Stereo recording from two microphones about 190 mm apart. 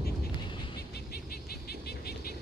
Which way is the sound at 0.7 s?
55° left (ahead or behind).